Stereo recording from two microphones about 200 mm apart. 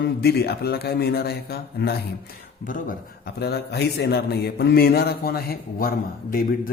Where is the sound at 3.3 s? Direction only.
55° left (ahead or behind).